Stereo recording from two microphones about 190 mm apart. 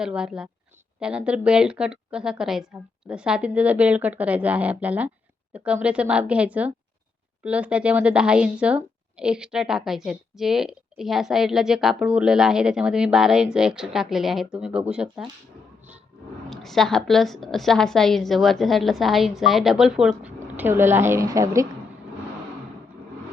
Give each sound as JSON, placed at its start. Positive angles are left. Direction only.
{"t": 0.0, "sound": "a woman's voice", "side_deg": -5}
{"t": 16.5, "sound": "a woman's voice", "side_deg": 0}